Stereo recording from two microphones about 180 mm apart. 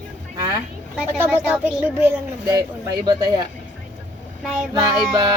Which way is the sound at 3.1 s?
25° right (ahead or behind).